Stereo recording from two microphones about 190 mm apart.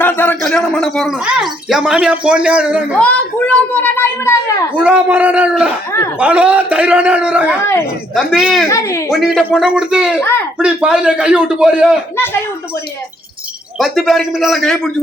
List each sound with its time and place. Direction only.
0.0 s a sound: 10° left (ahead or behind)
1.4 s speech: 5° right (ahead or behind)
3.0 s a woman's voice: 5° left (ahead or behind)
4.8 s a man's voice: 5° right (ahead or behind)
7.6 s a woman's voice: 15° left (ahead or behind)
8.1 s speech: centre (ahead or behind)
8.7 s a woman's voice: 15° left (ahead or behind)
9.1 s speech: centre (ahead or behind)
10.2 s a woman's voice: 10° left (ahead or behind)
10.6 s speech: 5° right (ahead or behind)
12.1 s a woman's voice: 10° left (ahead or behind)
13.7 s speech: centre (ahead or behind)